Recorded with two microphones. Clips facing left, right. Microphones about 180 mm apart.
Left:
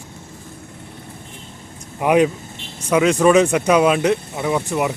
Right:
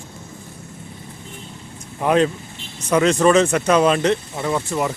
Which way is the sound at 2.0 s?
10° left (ahead or behind).